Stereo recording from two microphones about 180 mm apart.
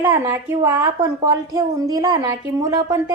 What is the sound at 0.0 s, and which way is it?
A woman's voice, 15° right (ahead or behind).